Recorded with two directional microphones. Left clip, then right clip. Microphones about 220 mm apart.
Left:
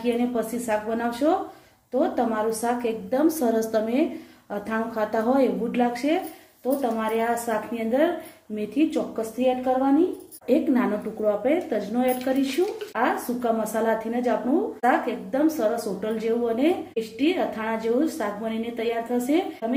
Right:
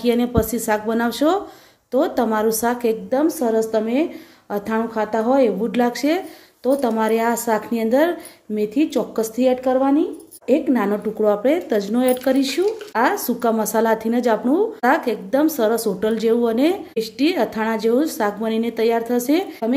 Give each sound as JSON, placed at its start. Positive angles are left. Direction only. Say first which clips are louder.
{"t": 0.0, "sound": "a woman's voice", "louder": "right 6 dB", "side_deg": -45}
{"t": 10.4, "sound": "a woman's voice", "louder": "right 4 dB", "side_deg": -35}
{"t": 11.2, "sound": "a woman's voice", "louder": "right 5 dB", "side_deg": -50}